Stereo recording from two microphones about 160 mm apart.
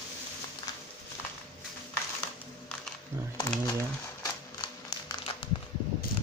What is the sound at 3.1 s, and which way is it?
Speech, 15° right (ahead or behind).